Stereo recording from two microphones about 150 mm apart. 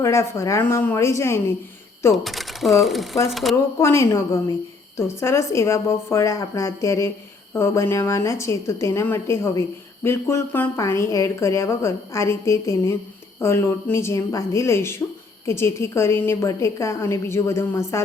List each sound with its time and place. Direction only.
0.0 s a woman's voice: 20° left (ahead or behind)
2.1 s speech: centre (ahead or behind)
3.5 s a woman's voice: 20° left (ahead or behind)